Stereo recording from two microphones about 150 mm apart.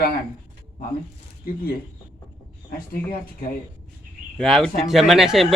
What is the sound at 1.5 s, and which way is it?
Speech, 80° left.